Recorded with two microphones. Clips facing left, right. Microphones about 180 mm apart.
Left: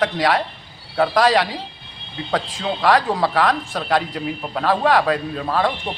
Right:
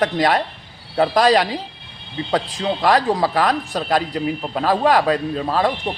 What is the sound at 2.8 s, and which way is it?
A man's voice, 15° right (ahead or behind).